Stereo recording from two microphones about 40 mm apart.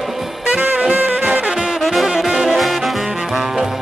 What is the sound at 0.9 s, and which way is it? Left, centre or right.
Music, right.